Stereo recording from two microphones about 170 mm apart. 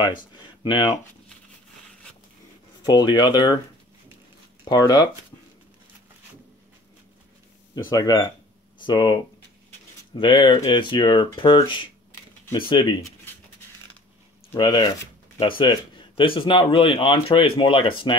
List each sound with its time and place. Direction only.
0.0 s speech: 25° left (ahead or behind)
2.8 s speech: 25° left (ahead or behind)
4.6 s speech: 25° left (ahead or behind)
7.7 s speech: 25° left (ahead or behind)
14.6 s speech: 25° left (ahead or behind)